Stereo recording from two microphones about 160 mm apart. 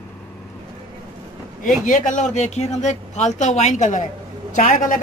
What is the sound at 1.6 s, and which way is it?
Speech, 55° left (ahead or behind).